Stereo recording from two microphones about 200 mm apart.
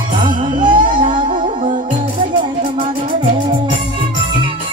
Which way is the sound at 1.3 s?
40° right (ahead or behind).